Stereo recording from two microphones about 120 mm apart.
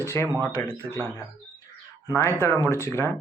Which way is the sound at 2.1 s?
25° left (ahead or behind).